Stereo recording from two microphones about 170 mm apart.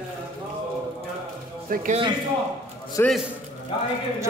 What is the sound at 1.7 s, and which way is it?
Speech, 50° right (ahead or behind).